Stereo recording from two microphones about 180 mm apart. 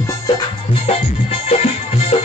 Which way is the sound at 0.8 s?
35° left (ahead or behind).